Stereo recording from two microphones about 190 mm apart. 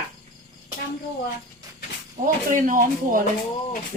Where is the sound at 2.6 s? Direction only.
45° right (ahead or behind).